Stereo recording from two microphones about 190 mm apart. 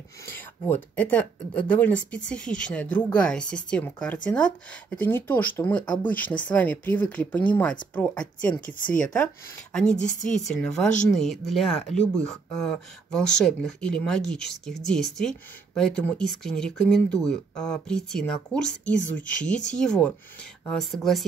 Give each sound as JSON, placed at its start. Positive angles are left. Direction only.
{"t": 0.3, "sound": "speech", "side_deg": 10}
{"t": 8.6, "sound": "speech", "side_deg": 45}
{"t": 8.9, "sound": "speech", "side_deg": 5}
{"t": 11.1, "sound": "speech", "side_deg": 0}